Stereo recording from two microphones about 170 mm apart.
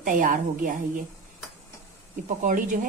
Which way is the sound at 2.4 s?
50° right (ahead or behind).